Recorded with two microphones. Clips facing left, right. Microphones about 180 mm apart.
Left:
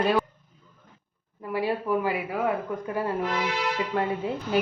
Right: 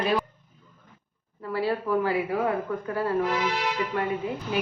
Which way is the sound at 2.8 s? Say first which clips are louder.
Left 1 dB; 15° left (ahead or behind).